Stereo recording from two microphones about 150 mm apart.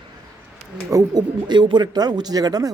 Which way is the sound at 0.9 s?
25° right (ahead or behind).